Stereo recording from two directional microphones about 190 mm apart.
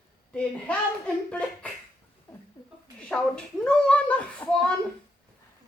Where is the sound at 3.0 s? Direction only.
5° left (ahead or behind).